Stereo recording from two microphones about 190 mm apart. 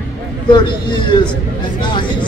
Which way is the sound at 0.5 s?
25° left (ahead or behind).